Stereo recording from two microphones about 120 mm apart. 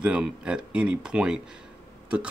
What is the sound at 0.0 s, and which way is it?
Speech, 10° right (ahead or behind).